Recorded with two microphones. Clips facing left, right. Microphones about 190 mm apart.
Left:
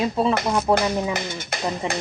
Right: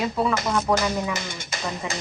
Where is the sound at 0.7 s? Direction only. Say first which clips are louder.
Left 3 dB; 25° left (ahead or behind).